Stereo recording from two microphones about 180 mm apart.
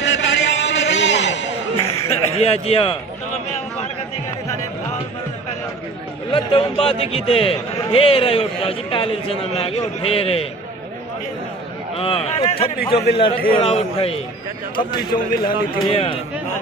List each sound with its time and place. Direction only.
0.0 s a sound: 85° left
1.8 s a man's voice: 35° left (ahead or behind)
6.3 s speech: 30° left (ahead or behind)
12.0 s a man's voice: 35° left (ahead or behind)
15.4 s speech: 30° left (ahead or behind)